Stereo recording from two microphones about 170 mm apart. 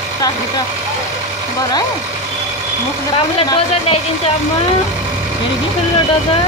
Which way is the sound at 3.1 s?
35° left (ahead or behind).